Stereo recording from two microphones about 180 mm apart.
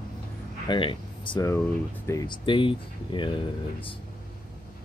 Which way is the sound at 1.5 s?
15° left (ahead or behind).